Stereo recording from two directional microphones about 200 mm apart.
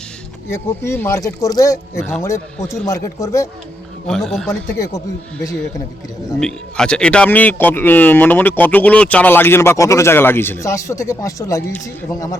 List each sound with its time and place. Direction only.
0.5 s speech: 10° left (ahead or behind)
4.0 s a man's voice: centre (ahead or behind)
4.9 s speech: 15° left (ahead or behind)
6.4 s speech: 5° left (ahead or behind)